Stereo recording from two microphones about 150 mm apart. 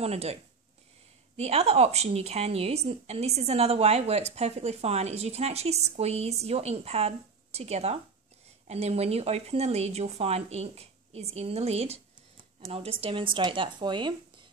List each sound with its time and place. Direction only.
0.0 s a woman's voice: 45° right (ahead or behind)